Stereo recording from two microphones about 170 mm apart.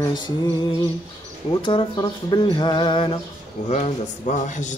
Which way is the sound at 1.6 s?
30° left (ahead or behind).